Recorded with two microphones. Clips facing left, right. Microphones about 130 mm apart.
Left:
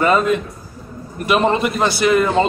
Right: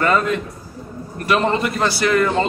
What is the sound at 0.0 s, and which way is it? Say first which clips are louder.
A man's voice: left 3 dB; 15° left (ahead or behind).